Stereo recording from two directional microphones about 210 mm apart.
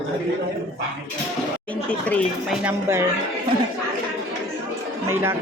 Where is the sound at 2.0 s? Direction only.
5° left (ahead or behind).